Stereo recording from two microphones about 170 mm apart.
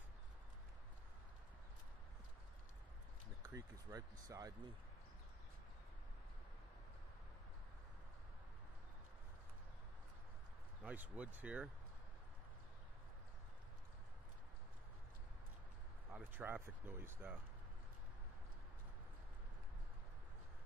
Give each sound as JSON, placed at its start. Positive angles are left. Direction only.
{"t": 3.4, "sound": "speech", "side_deg": -20}
{"t": 10.8, "sound": "speech", "side_deg": -10}
{"t": 16.1, "sound": "speech", "side_deg": -10}